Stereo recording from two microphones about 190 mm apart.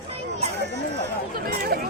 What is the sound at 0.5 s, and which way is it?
Chatter, 65° right (ahead or behind).